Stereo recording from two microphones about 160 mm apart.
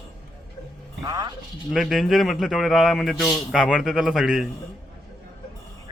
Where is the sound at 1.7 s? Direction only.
Centre (ahead or behind).